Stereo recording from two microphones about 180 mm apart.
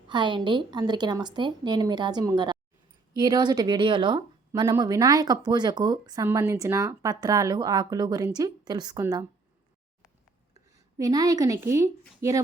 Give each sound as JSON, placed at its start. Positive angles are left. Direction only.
{"t": 0.1, "sound": "speech", "side_deg": -25}
{"t": 10.9, "sound": "speech", "side_deg": -20}